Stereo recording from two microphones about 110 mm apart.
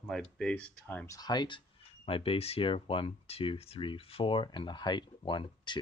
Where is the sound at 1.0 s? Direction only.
35° left (ahead or behind).